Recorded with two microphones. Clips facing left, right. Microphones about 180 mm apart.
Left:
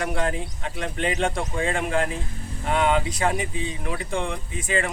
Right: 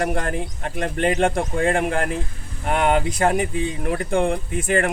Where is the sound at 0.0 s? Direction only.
50° right (ahead or behind).